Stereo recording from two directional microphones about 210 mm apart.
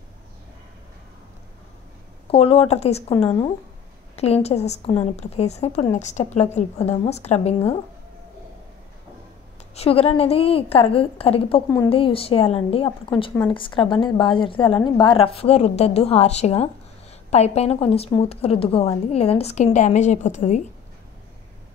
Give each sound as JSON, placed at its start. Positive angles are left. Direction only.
{"t": 2.2, "sound": "a woman's voice", "side_deg": 30}
{"t": 9.8, "sound": "a woman's voice", "side_deg": 30}